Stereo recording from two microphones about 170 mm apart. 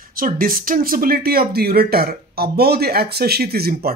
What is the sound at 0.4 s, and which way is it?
Speech, 55° right (ahead or behind).